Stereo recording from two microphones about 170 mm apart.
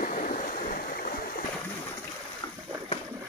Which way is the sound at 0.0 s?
50° left (ahead or behind).